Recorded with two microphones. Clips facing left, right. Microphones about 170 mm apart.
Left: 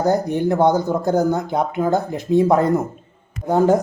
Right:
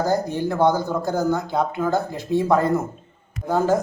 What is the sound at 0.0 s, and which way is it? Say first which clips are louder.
Speech: left 4 dB; 20° left (ahead or behind).